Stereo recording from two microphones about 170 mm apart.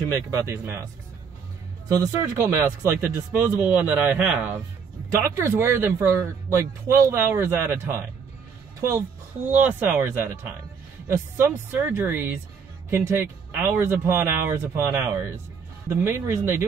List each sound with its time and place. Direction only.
0.1 s speech: 15° right (ahead or behind)
1.9 s speech: 15° right (ahead or behind)
9.5 s speech: 10° right (ahead or behind)